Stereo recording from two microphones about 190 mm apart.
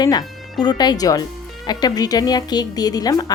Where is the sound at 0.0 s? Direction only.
20° left (ahead or behind).